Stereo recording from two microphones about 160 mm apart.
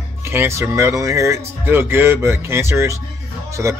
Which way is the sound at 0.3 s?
15° right (ahead or behind).